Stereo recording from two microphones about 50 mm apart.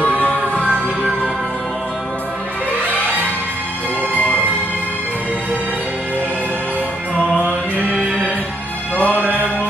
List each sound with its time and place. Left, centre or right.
0.0 s music: left
7.3 s music: left
8.9 s music: left